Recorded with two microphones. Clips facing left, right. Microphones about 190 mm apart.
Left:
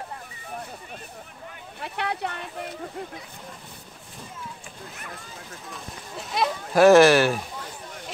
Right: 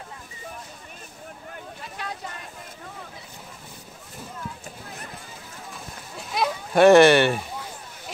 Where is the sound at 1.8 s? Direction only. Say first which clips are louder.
Left 8 dB; 65° left (ahead or behind).